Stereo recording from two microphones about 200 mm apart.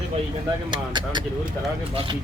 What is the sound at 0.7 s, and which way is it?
Speech, 20° right (ahead or behind).